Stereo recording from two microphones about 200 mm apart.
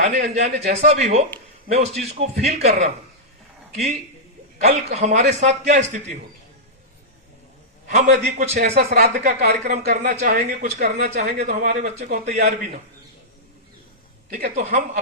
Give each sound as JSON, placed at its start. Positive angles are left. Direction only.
{"t": 0.0, "sound": "speech", "side_deg": -35}
{"t": 4.6, "sound": "speech", "side_deg": -35}
{"t": 7.9, "sound": "speech", "side_deg": -35}
{"t": 8.7, "sound": "speech", "side_deg": -50}
{"t": 9.1, "sound": "speech", "side_deg": -35}
{"t": 9.4, "sound": "speech", "side_deg": -50}
{"t": 9.9, "sound": "speech", "side_deg": -35}
{"t": 14.5, "sound": "speech", "side_deg": -35}